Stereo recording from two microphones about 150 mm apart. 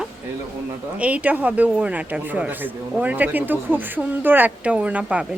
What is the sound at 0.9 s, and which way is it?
Speech, 10° right (ahead or behind).